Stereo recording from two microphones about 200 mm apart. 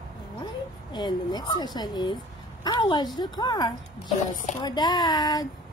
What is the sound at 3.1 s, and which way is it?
Speech, 20° left (ahead or behind).